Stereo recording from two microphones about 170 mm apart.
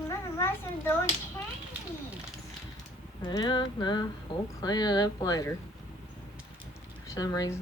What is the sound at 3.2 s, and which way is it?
Speech, 25° left (ahead or behind).